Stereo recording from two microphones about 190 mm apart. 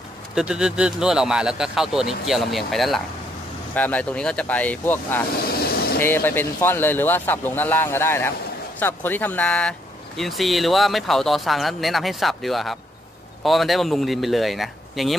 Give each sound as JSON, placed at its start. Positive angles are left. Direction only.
{"t": 0.3, "sound": "speech", "side_deg": -5}
{"t": 5.4, "sound": "vehicle", "side_deg": 55}
{"t": 5.9, "sound": "speech", "side_deg": 10}